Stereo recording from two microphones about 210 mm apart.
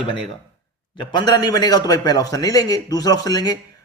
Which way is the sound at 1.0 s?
20° left (ahead or behind).